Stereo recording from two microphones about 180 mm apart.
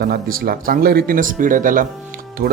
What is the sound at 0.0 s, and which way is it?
Speech, 55° right (ahead or behind).